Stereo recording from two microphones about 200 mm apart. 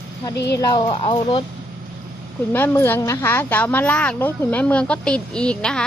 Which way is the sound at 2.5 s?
10° left (ahead or behind).